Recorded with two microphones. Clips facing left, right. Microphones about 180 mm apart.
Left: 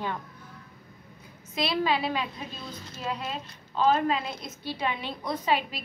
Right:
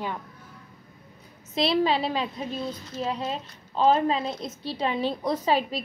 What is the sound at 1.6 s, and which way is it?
A woman's voice, 30° right (ahead or behind).